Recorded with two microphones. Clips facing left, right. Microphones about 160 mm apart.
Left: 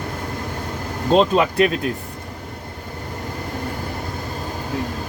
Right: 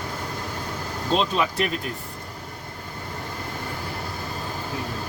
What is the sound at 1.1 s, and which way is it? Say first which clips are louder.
Speech: left 8 dB; 45° left (ahead or behind).